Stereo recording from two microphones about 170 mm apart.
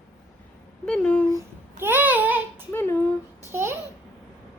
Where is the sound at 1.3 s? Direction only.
15° right (ahead or behind).